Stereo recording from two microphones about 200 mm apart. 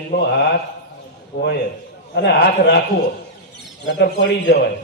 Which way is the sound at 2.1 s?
55° left (ahead or behind).